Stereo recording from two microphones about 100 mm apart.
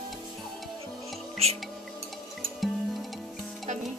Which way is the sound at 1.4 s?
90° right.